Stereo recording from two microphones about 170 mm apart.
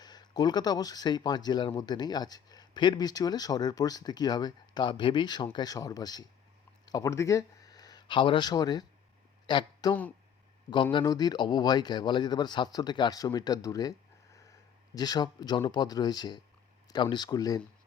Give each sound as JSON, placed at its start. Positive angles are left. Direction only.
{"t": 0.0, "sound": "speech", "side_deg": 25}
{"t": 10.9, "sound": "speech", "side_deg": 25}
{"t": 14.9, "sound": "speech", "side_deg": 25}